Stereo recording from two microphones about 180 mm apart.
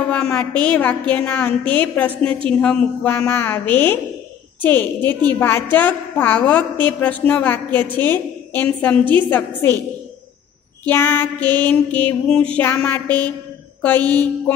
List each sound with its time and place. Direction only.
0.1 s a woman's voice: 5° left (ahead or behind)
9.0 s a woman's voice: 25° right (ahead or behind)
9.3 s a woman's voice: 15° left (ahead or behind)
10.9 s a woman's voice: 10° left (ahead or behind)
14.0 s a woman's voice: 20° right (ahead or behind)